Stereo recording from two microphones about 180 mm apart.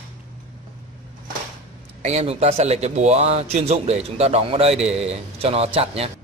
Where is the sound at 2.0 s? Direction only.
40° right (ahead or behind).